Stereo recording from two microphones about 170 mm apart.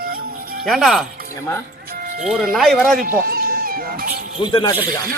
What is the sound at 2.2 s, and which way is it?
Speech, centre (ahead or behind).